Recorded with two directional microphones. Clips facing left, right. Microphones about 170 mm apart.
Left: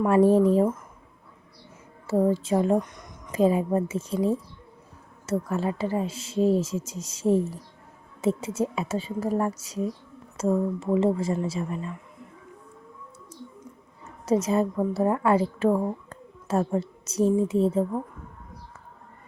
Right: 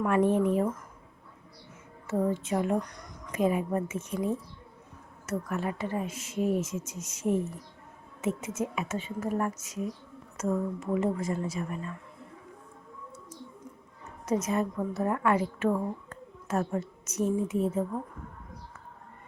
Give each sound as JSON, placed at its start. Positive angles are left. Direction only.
{"t": 0.0, "sound": "speech", "side_deg": 30}
{"t": 2.0, "sound": "a woman's voice", "side_deg": 30}
{"t": 14.3, "sound": "a woman's voice", "side_deg": 30}